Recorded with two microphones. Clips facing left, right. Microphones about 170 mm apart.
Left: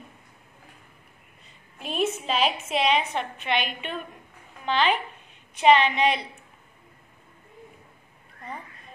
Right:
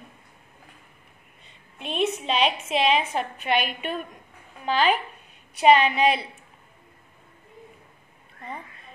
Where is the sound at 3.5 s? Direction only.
40° right (ahead or behind).